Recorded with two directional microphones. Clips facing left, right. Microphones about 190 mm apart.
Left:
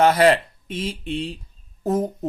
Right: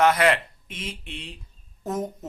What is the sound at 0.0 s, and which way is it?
Speech, 35° left (ahead or behind).